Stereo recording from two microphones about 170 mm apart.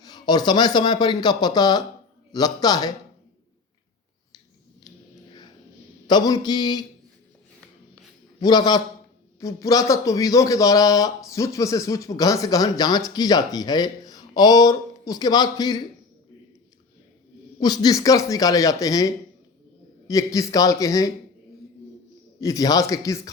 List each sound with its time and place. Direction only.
0.0 s speech: 25° left (ahead or behind)
6.1 s speech: 25° left (ahead or behind)
8.4 s speech: 25° left (ahead or behind)
17.6 s speech: 25° left (ahead or behind)
22.4 s speech: 20° left (ahead or behind)